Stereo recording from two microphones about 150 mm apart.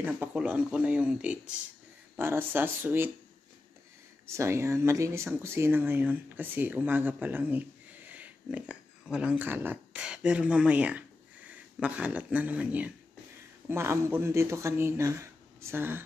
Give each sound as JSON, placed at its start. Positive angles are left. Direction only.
{"t": 0.0, "sound": "speech", "side_deg": -10}
{"t": 4.3, "sound": "speech", "side_deg": -20}